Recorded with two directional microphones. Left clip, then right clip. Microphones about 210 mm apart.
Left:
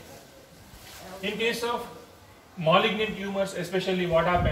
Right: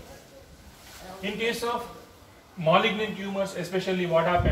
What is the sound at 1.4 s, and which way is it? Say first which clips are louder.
A man's voice: even; 5° left (ahead or behind).